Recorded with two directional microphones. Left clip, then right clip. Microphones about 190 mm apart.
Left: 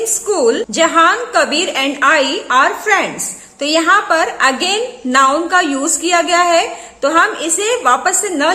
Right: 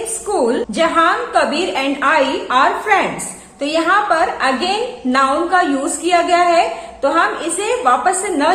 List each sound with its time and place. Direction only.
0.3 s a woman's voice: 45° left (ahead or behind)